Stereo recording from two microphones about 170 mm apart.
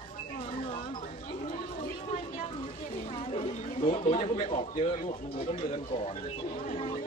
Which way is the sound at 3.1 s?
35° left (ahead or behind).